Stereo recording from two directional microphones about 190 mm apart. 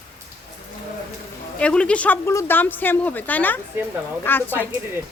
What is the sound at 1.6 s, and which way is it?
Speech, 5° left (ahead or behind).